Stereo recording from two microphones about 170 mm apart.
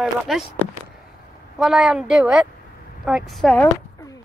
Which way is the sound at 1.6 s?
5° right (ahead or behind).